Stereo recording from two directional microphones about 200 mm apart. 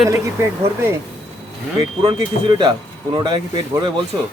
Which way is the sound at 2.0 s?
25° right (ahead or behind).